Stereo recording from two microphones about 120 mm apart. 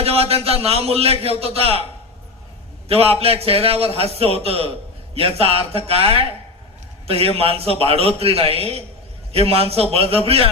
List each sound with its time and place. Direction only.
0.0 s a man's voice: 55° right (ahead or behind)
2.9 s a man's voice: 55° right (ahead or behind)